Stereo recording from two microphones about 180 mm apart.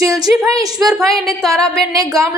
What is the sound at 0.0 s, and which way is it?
Speech, 20° right (ahead or behind).